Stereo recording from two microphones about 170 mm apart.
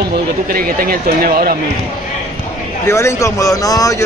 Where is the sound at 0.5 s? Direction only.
60° right (ahead or behind).